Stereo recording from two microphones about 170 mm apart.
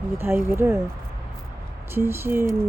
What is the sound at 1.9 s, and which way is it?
Speech, 15° right (ahead or behind).